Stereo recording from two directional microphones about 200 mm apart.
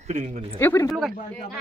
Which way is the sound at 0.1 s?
35° right (ahead or behind).